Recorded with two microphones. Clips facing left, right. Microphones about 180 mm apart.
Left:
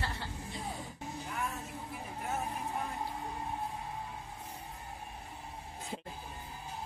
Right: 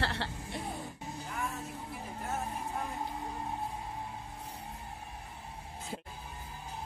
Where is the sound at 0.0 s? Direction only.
75° right (ahead or behind).